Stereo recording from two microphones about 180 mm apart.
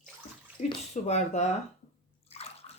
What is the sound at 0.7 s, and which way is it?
Speech, 40° left (ahead or behind).